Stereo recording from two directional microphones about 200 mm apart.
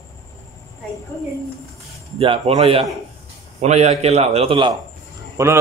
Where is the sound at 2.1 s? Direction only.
30° right (ahead or behind).